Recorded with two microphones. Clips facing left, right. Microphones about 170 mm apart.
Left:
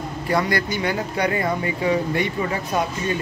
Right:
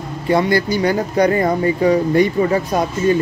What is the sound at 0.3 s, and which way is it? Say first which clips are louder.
Speech: right 7 dB; 25° right (ahead or behind).